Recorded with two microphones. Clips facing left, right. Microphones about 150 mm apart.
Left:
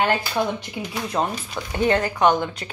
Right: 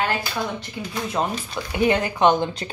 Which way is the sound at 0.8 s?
15° left (ahead or behind).